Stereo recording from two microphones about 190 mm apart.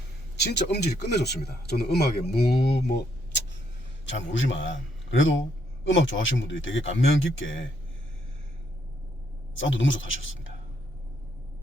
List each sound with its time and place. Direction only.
0.3 s speech: 60° left (ahead or behind)
4.0 s a man's voice: 75° left (ahead or behind)
9.6 s a man's voice: 80° left